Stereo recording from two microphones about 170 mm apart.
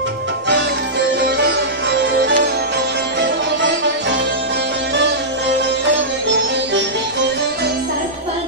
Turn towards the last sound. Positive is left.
turn(degrees=-90)